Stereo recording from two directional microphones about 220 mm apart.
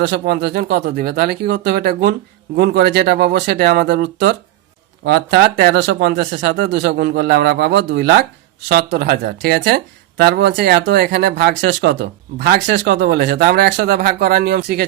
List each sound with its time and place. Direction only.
0.0 s speech: 50° right (ahead or behind)